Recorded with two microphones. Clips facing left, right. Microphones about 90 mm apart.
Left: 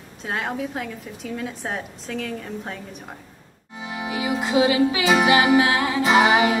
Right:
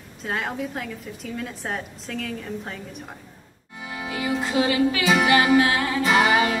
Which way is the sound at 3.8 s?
15° left (ahead or behind).